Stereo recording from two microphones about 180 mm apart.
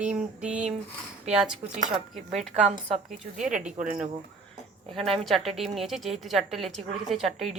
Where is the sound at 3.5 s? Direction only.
5° right (ahead or behind).